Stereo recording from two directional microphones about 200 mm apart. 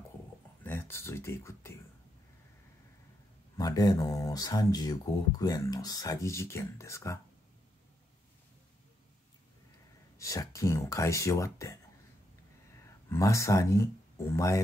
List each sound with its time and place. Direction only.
0.7 s speech: 10° left (ahead or behind)
3.5 s speech: 20° left (ahead or behind)
10.1 s speech: 15° left (ahead or behind)
13.1 s speech: 15° left (ahead or behind)